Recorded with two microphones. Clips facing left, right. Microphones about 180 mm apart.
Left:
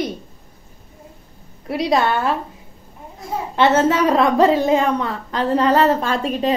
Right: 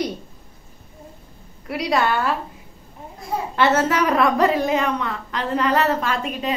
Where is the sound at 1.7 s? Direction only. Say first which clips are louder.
Left 3 dB; 25° left (ahead or behind).